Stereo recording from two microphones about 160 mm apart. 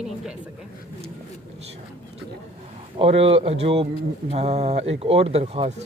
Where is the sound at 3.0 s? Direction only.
40° right (ahead or behind).